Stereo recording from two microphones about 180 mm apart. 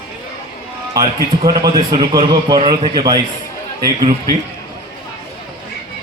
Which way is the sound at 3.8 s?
55° right (ahead or behind).